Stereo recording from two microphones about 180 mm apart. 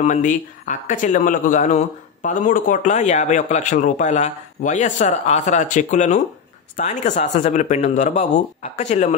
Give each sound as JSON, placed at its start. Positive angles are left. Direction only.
{"t": 0.0, "sound": "speech", "side_deg": 45}